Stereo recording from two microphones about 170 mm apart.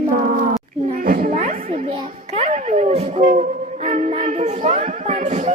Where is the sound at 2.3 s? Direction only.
45° right (ahead or behind).